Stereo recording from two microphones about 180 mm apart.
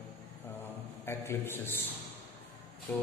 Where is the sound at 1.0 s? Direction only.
15° left (ahead or behind).